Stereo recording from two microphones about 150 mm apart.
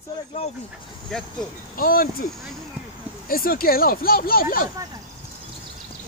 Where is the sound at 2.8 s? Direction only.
5° right (ahead or behind).